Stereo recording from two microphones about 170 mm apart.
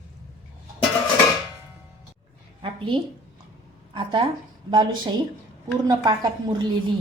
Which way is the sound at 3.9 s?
30° right (ahead or behind).